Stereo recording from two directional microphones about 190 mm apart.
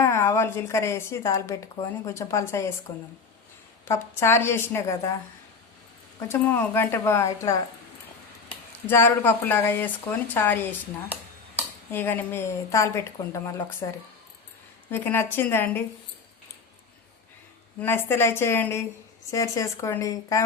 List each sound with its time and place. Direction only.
0.0 s speech: 15° left (ahead or behind)
6.1 s speech: 15° left (ahead or behind)
11.9 s speech: 10° left (ahead or behind)
17.7 s speech: 10° left (ahead or behind)